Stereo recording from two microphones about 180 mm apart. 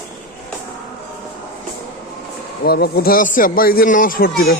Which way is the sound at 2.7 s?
60° left (ahead or behind).